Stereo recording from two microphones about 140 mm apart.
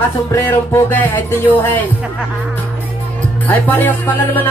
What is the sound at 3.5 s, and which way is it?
Music, 15° left (ahead or behind).